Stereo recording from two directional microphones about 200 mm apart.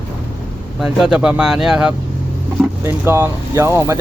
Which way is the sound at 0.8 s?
5° right (ahead or behind).